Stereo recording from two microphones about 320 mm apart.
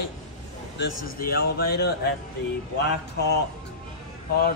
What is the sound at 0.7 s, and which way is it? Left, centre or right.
Speech, left.